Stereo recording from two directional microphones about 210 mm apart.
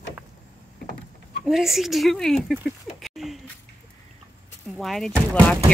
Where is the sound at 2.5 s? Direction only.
Centre (ahead or behind).